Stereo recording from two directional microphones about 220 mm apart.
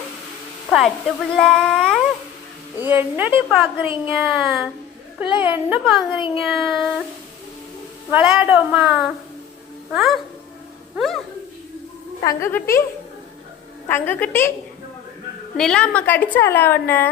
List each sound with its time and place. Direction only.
0.7 s speech: centre (ahead or behind)
2.8 s a woman's voice: 10° right (ahead or behind)
5.7 s speech: centre (ahead or behind)
6.1 s speech: 20° left (ahead or behind)
6.4 s speech: centre (ahead or behind)
8.1 s speech: 5° right (ahead or behind)
12.2 s a woman's voice: 15° left (ahead or behind)
13.8 s a woman's voice: 10° left (ahead or behind)
15.5 s a woman's voice: 5° left (ahead or behind)